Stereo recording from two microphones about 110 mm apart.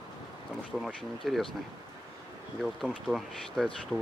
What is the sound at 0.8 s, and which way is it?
Speech, centre (ahead or behind).